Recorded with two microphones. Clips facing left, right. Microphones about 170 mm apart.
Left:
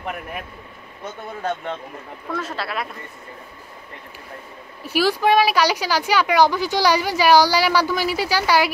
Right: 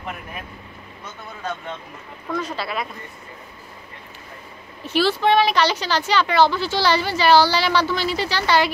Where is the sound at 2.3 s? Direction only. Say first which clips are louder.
Right 1 dB; 5° left (ahead or behind).